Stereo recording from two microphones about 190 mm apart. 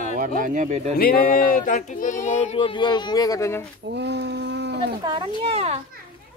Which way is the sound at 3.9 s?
65° right (ahead or behind).